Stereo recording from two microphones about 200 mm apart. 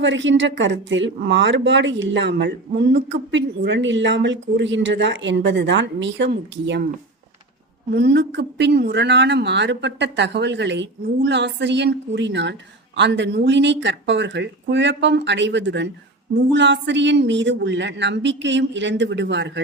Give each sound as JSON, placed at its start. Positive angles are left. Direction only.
{"t": 0.0, "sound": "speech", "side_deg": -65}
{"t": 7.9, "sound": "speech", "side_deg": -55}